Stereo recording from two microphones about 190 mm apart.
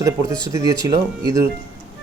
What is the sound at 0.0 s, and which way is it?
A man's voice, 15° right (ahead or behind).